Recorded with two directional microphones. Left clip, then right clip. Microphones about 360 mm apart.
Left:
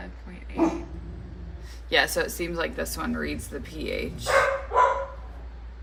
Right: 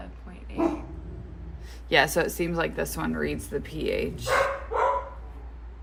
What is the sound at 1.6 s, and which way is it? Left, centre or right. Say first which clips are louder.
A woman's voice: right 1 dB; right.